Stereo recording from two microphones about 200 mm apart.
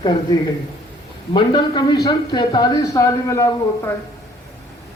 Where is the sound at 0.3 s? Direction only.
20° left (ahead or behind).